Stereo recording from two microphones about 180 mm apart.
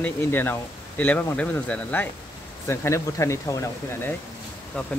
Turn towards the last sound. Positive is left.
turn(degrees=5)  # may be behind; listen again after turning